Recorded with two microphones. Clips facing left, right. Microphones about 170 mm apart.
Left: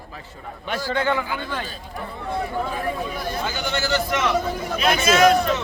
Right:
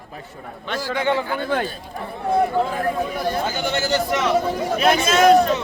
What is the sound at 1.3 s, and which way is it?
Speech, 50° right (ahead or behind).